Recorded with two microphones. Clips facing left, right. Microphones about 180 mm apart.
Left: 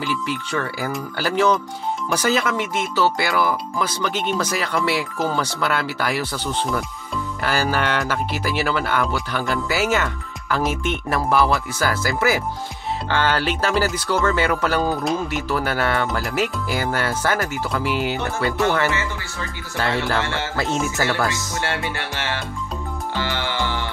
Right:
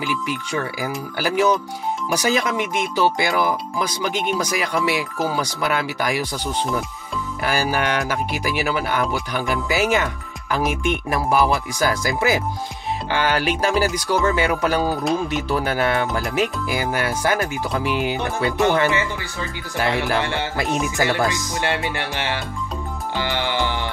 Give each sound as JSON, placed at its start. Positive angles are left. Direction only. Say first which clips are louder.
{"t": 0.0, "sound": "speech", "louder": "even", "side_deg": -15}
{"t": 15.2, "sound": "speech", "louder": "right 1 dB", "side_deg": -20}
{"t": 23.1, "sound": "music", "louder": "right 3 dB", "side_deg": -15}